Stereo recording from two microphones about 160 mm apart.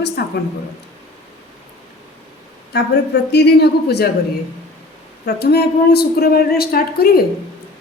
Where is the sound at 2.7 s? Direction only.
90° left.